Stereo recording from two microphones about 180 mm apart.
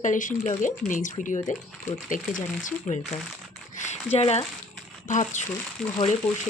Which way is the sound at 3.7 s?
40° left (ahead or behind).